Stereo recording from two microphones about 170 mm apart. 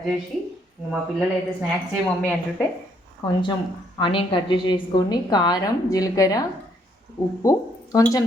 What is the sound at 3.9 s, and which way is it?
A woman's voice, 30° left (ahead or behind).